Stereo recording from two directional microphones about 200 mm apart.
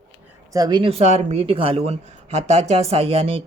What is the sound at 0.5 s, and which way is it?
Speech, 20° right (ahead or behind).